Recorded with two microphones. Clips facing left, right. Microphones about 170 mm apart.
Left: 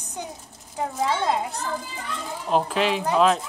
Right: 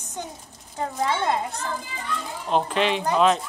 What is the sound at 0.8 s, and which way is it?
Speech, 5° left (ahead or behind).